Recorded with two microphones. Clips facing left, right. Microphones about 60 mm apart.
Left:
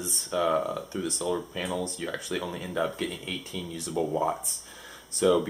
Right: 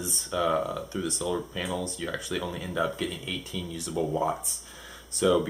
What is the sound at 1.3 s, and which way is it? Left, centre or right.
Speech, left.